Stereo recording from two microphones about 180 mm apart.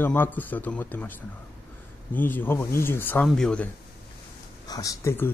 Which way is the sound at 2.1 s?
10° left (ahead or behind).